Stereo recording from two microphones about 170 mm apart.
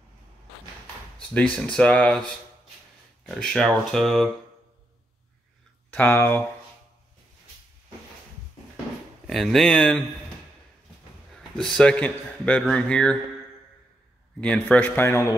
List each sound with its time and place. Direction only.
1.3 s speech: 5° left (ahead or behind)
5.9 s speech: 10° left (ahead or behind)
9.3 s speech: centre (ahead or behind)
11.3 s speech: 5° left (ahead or behind)
14.4 s a man's voice: 5° left (ahead or behind)